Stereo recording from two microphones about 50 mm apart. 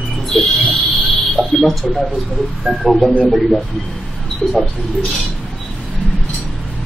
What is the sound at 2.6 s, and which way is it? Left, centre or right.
Speech, centre.